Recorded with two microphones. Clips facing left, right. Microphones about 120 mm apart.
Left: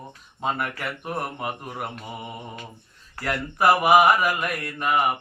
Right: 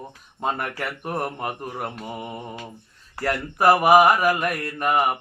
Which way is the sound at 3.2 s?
40° right (ahead or behind).